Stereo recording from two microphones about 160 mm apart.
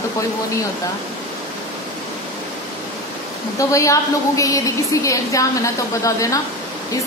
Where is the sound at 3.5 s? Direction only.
20° left (ahead or behind).